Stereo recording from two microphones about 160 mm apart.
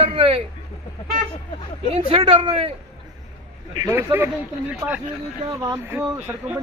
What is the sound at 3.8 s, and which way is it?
Speech, 15° right (ahead or behind).